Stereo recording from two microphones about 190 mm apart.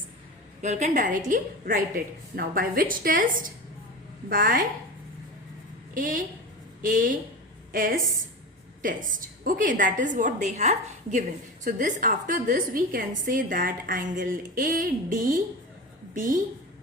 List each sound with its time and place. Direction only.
0.6 s a woman's voice: 40° right (ahead or behind)
5.9 s a woman's voice: 45° right (ahead or behind)